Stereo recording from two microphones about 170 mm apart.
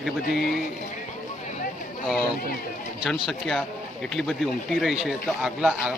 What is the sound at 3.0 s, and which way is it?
Speech, centre (ahead or behind).